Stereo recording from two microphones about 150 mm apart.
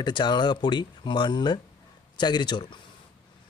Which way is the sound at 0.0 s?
30° left (ahead or behind).